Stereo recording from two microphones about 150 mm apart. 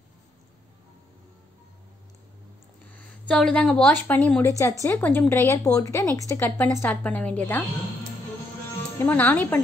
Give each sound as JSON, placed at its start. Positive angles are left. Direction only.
{"t": 3.3, "sound": "a woman's voice", "side_deg": 5}
{"t": 9.0, "sound": "a woman's voice", "side_deg": 15}